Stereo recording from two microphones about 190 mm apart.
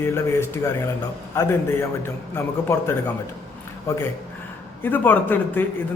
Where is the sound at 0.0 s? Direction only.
15° left (ahead or behind).